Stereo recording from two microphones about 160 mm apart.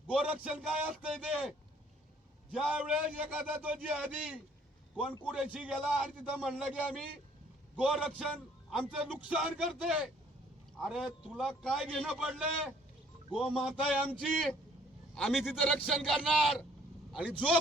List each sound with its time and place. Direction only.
0.1 s a man's voice: 5° right (ahead or behind)